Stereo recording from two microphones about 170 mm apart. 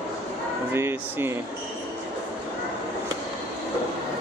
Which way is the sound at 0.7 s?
15° right (ahead or behind).